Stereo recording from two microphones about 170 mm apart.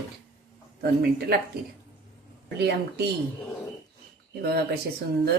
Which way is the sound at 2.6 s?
75° right (ahead or behind).